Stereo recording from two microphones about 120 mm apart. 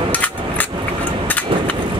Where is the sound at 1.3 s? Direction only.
10° left (ahead or behind).